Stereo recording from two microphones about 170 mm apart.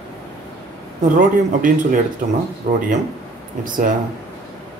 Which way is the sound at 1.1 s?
50° right (ahead or behind).